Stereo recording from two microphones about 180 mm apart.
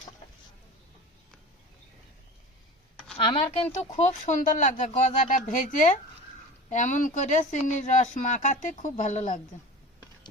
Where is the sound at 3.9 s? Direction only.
40° left (ahead or behind).